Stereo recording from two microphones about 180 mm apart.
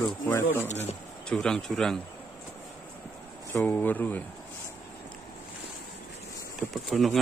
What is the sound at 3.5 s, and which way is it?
Speech, 10° left (ahead or behind).